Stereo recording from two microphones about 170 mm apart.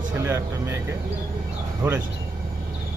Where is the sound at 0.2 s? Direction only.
20° right (ahead or behind).